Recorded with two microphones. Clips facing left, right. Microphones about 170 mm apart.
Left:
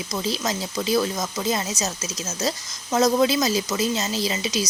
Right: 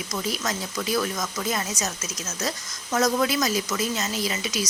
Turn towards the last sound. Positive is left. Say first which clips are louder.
# left 3 dB
turn(degrees=25)  # may be behind; listen again after turning